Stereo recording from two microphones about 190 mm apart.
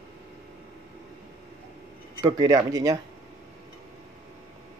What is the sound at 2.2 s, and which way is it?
Speech, 20° right (ahead or behind).